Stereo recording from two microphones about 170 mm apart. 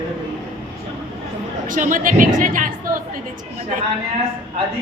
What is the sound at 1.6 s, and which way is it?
Speech, 50° right (ahead or behind).